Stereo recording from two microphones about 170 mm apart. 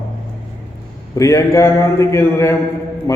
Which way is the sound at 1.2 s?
20° left (ahead or behind).